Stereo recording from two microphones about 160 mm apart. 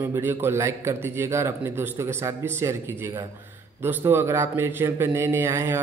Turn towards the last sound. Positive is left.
turn(degrees=-15)  # may be behind; listen again after turning